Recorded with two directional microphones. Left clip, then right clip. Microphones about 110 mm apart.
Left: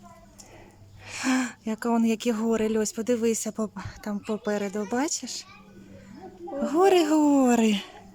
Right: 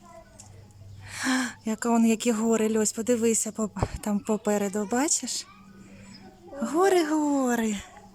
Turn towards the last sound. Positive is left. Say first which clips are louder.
# left 5 dB
turn(degrees=15)  # may be behind; listen again after turning